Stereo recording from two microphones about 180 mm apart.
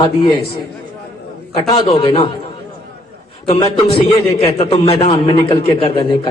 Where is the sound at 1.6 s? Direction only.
30° left (ahead or behind).